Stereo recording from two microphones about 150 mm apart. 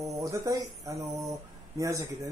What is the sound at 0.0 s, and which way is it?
Speech, 20° right (ahead or behind).